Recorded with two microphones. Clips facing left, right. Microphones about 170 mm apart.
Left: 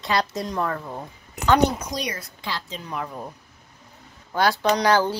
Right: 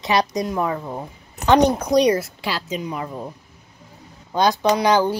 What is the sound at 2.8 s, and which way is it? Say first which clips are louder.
Speech: right 4 dB; 10° right (ahead or behind).